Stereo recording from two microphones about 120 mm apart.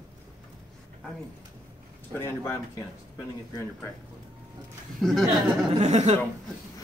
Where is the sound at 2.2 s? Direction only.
20° left (ahead or behind).